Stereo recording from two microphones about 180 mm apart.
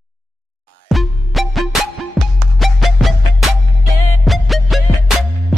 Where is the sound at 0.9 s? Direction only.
Centre (ahead or behind).